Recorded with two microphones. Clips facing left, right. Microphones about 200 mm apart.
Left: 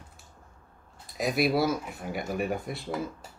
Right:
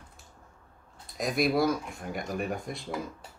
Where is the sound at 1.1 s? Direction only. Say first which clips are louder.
Left 1 dB; 5° left (ahead or behind).